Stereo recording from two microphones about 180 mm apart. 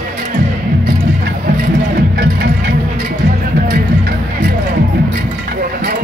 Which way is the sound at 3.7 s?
60° right (ahead or behind).